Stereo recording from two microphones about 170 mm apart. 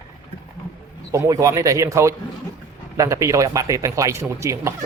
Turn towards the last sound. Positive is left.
turn(degrees=-15)  # may be behind; listen again after turning